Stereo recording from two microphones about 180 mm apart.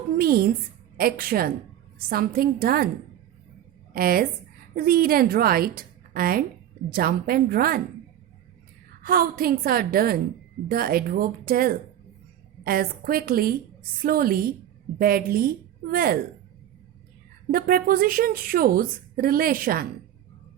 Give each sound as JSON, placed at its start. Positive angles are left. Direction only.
{"t": 0.2, "sound": "speech", "side_deg": -55}
{"t": 3.9, "sound": "a woman's voice", "side_deg": -55}
{"t": 9.0, "sound": "a woman's voice", "side_deg": -55}
{"t": 17.5, "sound": "a woman's voice", "side_deg": -55}